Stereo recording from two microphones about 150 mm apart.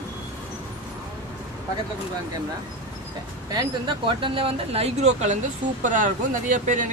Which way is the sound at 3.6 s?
35° right (ahead or behind).